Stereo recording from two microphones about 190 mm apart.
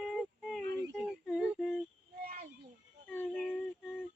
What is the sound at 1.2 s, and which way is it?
Female singing, centre (ahead or behind).